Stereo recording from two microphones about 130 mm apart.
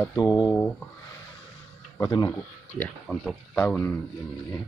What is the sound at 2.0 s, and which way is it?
Speech, 30° left (ahead or behind).